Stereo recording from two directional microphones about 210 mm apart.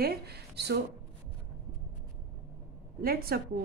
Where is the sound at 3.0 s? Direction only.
45° right (ahead or behind).